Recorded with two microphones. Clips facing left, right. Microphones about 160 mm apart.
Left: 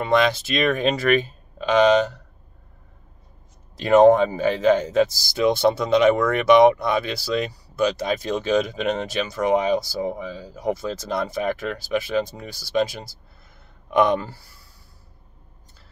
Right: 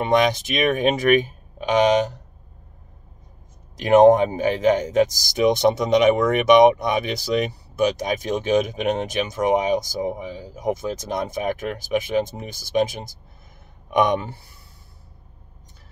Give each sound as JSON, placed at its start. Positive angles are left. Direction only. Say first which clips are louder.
{"t": 0.0, "sound": "speech", "louder": "right 1 dB", "side_deg": -20}
{"t": 3.7, "sound": "speech", "louder": "right 1 dB", "side_deg": -20}